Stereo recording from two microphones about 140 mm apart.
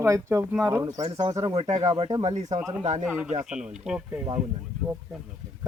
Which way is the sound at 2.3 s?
50° right (ahead or behind).